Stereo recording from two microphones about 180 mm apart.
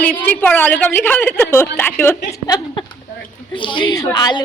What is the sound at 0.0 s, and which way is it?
A woman's voice, 10° left (ahead or behind).